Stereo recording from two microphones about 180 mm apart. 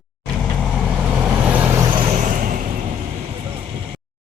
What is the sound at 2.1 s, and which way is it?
Vehicle, 45° right (ahead or behind).